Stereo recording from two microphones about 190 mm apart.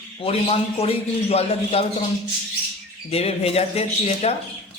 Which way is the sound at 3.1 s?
30° left (ahead or behind).